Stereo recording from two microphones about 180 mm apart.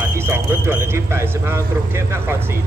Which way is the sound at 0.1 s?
15° right (ahead or behind).